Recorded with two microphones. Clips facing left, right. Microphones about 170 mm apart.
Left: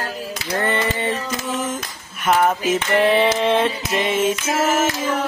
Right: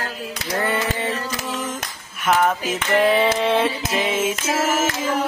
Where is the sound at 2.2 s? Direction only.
Centre (ahead or behind).